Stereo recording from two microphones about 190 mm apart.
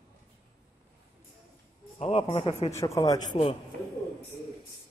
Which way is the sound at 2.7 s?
15° left (ahead or behind).